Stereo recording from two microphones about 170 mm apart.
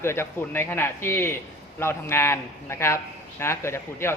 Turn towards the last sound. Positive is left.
turn(degrees=15)  # may be behind; listen again after turning